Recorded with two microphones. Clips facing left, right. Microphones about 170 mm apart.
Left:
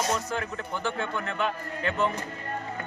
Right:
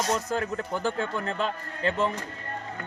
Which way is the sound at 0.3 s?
40° right (ahead or behind).